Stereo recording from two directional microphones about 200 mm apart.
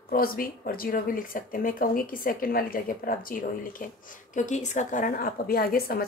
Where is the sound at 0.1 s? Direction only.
45° left (ahead or behind).